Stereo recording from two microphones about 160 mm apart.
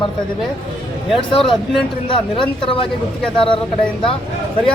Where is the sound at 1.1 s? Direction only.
30° left (ahead or behind).